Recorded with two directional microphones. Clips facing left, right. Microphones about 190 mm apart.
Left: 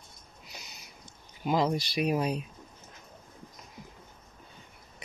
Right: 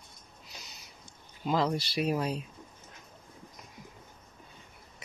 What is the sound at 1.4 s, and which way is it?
Speech, 15° left (ahead or behind).